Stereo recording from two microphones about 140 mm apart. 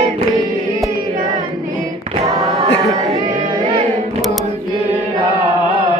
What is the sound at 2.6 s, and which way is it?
Choir, 45° right (ahead or behind).